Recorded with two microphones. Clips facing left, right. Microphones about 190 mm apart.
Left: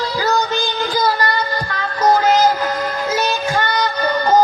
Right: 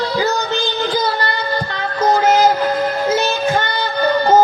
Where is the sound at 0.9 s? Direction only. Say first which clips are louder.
Left 1 dB; 25° right (ahead or behind).